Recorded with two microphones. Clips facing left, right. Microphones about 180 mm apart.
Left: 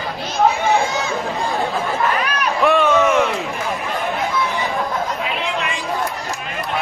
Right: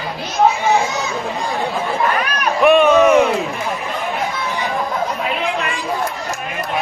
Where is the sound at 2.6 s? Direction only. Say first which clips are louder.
Right 5 dB; 15° right (ahead or behind).